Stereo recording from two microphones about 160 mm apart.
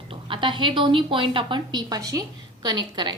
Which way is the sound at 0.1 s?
30° right (ahead or behind).